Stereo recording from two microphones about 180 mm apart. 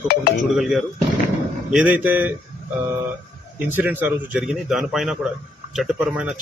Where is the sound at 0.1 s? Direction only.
60° left (ahead or behind).